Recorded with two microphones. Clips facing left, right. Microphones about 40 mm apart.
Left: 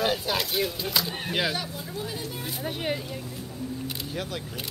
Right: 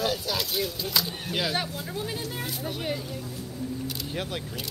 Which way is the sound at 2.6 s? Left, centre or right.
Left.